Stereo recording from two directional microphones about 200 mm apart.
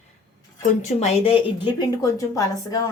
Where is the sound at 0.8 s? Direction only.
30° left (ahead or behind).